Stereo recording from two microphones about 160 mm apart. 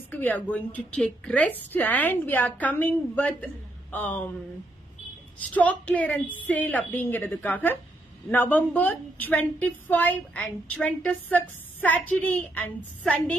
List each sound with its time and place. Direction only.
0.1 s a woman's voice: 10° left (ahead or behind)
5.5 s a woman's voice: 10° left (ahead or behind)